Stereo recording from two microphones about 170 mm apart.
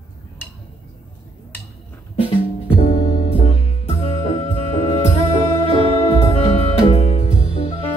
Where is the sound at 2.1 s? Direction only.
35° left (ahead or behind).